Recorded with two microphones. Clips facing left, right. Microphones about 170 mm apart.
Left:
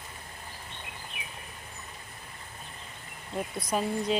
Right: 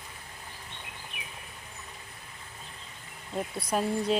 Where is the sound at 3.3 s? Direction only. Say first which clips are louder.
Even; 5° right (ahead or behind).